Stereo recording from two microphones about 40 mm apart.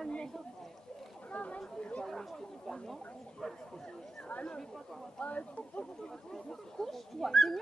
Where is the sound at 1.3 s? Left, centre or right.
Left.